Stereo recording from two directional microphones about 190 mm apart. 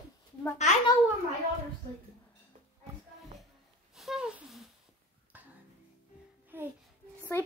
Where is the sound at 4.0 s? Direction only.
Centre (ahead or behind).